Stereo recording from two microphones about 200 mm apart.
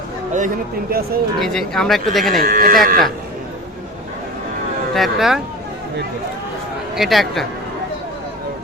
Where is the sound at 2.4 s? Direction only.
45° right (ahead or behind).